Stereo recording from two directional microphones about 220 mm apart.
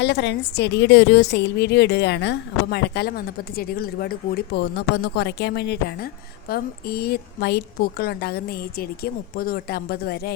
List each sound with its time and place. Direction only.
0.0 s a woman's voice: 50° left (ahead or behind)